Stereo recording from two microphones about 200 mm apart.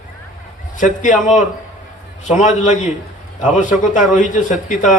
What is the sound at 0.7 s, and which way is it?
A man's voice, 40° left (ahead or behind).